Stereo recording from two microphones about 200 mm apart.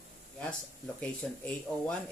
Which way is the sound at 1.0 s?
5° left (ahead or behind).